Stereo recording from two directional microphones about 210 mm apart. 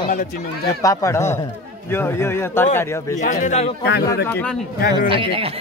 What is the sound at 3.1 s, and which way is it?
Speech, 35° left (ahead or behind).